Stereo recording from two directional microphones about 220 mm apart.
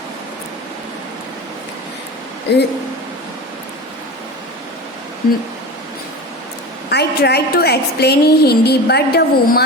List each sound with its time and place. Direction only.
2.5 s a woman's voice: 50° left (ahead or behind)
5.2 s a woman's voice: 45° left (ahead or behind)
6.9 s a woman's voice: 45° left (ahead or behind)